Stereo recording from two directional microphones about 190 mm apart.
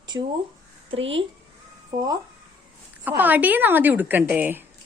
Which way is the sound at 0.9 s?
80° right.